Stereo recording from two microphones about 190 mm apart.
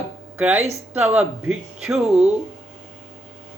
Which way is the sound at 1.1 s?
5° right (ahead or behind).